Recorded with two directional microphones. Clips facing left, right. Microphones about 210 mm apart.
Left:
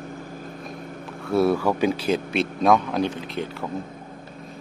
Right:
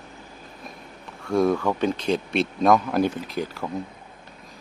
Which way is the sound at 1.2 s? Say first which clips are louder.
Left 1 dB; 5° left (ahead or behind).